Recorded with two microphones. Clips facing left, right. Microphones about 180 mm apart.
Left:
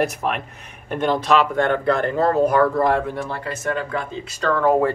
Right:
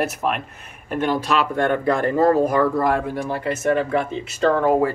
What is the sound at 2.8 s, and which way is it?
Speech, 10° right (ahead or behind).